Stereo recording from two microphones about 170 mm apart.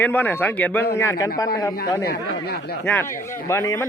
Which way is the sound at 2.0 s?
70° left (ahead or behind).